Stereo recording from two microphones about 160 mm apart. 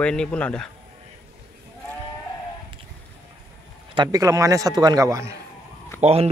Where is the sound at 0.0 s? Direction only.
5° left (ahead or behind).